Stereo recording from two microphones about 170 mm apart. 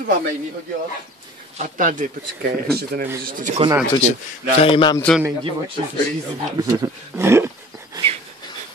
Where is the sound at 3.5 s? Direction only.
40° right (ahead or behind).